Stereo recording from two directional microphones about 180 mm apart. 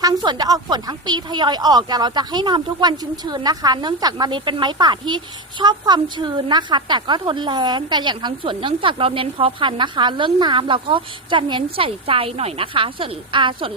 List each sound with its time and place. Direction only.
0.0 s speech: 20° right (ahead or behind)